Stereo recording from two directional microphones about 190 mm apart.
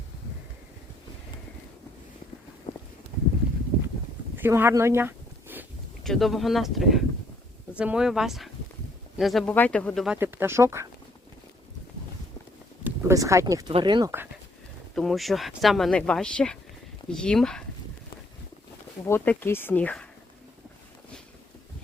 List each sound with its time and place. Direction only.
2.7 s a sound: 25° left (ahead or behind)
4.4 s a sound: 10° right (ahead or behind)
6.0 s speech: centre (ahead or behind)
10.2 s speech: 10° right (ahead or behind)
12.8 s speech: 15° right (ahead or behind)
14.9 s speech: centre (ahead or behind)
19.0 s speech: 10° left (ahead or behind)